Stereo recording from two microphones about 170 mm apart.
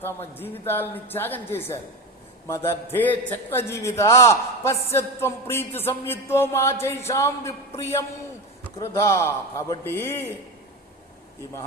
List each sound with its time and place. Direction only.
0.0 s a man's voice: 10° left (ahead or behind)